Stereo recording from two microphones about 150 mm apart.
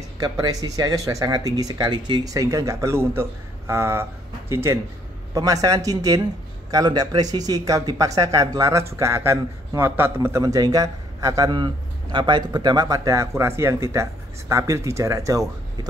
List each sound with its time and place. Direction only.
0.2 s speech: 25° right (ahead or behind)